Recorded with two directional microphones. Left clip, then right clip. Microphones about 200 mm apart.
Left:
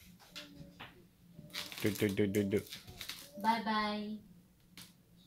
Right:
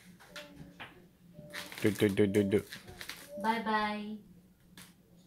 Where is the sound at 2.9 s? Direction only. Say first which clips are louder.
Right 5 dB; 30° left (ahead or behind).